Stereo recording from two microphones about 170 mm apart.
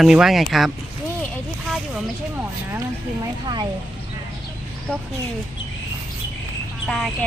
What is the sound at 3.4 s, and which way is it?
Speech, 25° right (ahead or behind).